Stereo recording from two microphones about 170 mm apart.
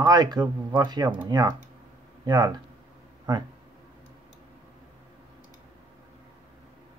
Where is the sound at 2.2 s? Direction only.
25° right (ahead or behind).